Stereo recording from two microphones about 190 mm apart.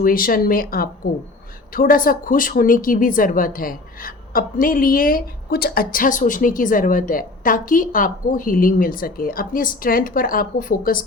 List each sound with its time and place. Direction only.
0.0 s a woman's voice: 50° left (ahead or behind)